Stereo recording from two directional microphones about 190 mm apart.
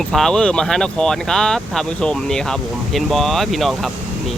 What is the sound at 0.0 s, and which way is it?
Speech, 5° left (ahead or behind).